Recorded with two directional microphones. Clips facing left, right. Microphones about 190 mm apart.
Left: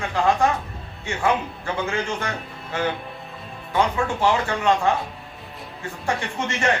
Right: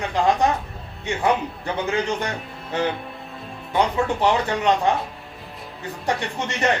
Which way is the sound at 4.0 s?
20° right (ahead or behind).